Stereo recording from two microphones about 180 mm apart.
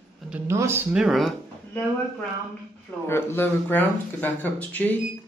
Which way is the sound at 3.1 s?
15° left (ahead or behind).